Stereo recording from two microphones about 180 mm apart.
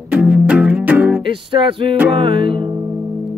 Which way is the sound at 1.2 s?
30° right (ahead or behind).